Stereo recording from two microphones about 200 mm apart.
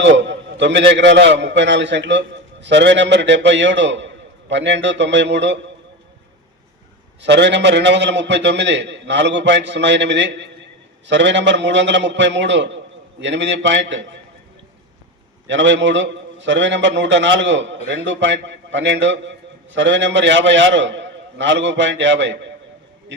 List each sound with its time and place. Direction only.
0.0 s a man's voice: 65° right (ahead or behind)
7.2 s a man's voice: 60° right (ahead or behind)
15.4 s a man's voice: 65° right (ahead or behind)